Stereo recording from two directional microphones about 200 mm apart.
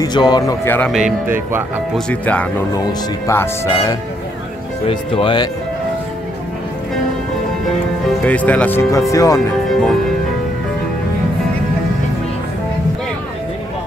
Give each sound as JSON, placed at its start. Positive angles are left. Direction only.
{"t": 0.0, "sound": "speech", "side_deg": 20}
{"t": 0.9, "sound": "speech", "side_deg": -5}
{"t": 2.0, "sound": "speech", "side_deg": 5}
{"t": 4.8, "sound": "speech", "side_deg": 25}
{"t": 8.3, "sound": "speech", "side_deg": 5}
{"t": 9.7, "sound": "music", "side_deg": 0}